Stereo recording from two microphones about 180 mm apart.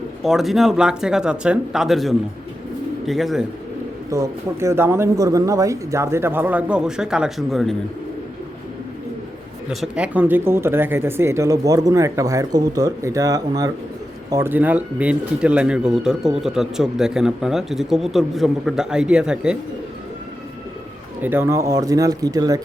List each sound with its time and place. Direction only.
0.2 s speech: centre (ahead or behind)
4.1 s speech: 15° right (ahead or behind); by 7.8 s centre (ahead or behind)
9.6 s speech: 5° right (ahead or behind)
21.2 s speech: 10° right (ahead or behind)